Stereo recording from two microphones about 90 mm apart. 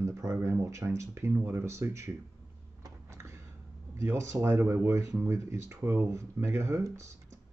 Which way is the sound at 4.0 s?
35° right (ahead or behind).